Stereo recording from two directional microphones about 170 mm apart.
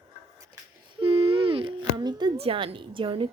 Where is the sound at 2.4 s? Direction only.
35° right (ahead or behind).